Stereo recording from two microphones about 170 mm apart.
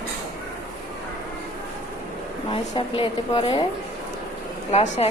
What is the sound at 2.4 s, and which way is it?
A woman's voice, 30° left (ahead or behind).